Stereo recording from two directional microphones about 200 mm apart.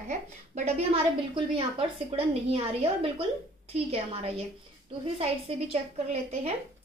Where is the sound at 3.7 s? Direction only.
30° right (ahead or behind).